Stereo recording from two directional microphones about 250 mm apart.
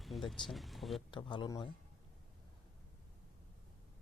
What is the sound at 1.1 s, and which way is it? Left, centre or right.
Speech, centre.